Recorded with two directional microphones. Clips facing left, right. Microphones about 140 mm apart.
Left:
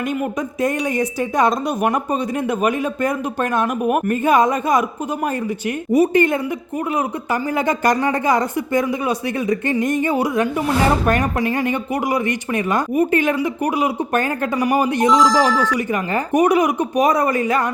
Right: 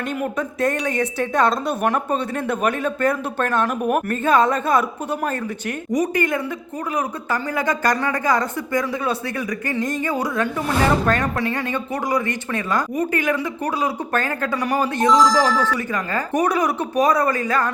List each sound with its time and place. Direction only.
0.1 s speech: 10° left (ahead or behind)
5.9 s speech: 25° left (ahead or behind)
7.5 s speech: 20° left (ahead or behind)